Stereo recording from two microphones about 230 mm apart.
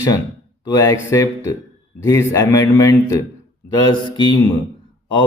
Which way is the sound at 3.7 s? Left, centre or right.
Centre.